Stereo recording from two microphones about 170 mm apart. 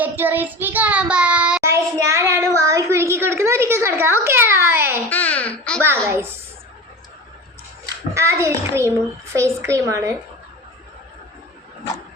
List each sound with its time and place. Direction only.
0.0 s child singing: 10° right (ahead or behind)
1.6 s a sound: 15° right (ahead or behind)
5.0 s babbling: 10° left (ahead or behind)
6.1 s a child's voice: 15° right (ahead or behind)
8.1 s a child's voice: 15° right (ahead or behind)